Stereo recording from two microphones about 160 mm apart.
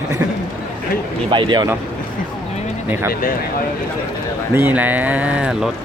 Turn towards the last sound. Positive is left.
turn(degrees=-5)  # may be behind; listen again after turning